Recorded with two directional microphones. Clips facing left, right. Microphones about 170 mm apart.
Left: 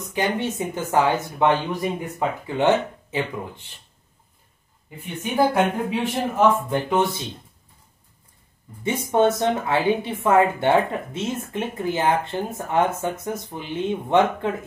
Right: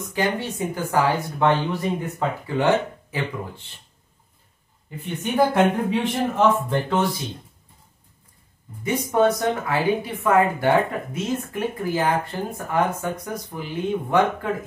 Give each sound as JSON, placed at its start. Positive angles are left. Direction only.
{"t": 0.2, "sound": "speech", "side_deg": 20}
{"t": 4.8, "sound": "speech", "side_deg": 10}
{"t": 9.1, "sound": "speech", "side_deg": 25}